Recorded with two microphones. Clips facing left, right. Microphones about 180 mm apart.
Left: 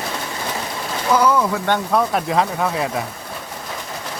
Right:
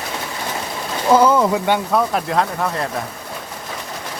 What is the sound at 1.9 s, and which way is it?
Speech, centre (ahead or behind).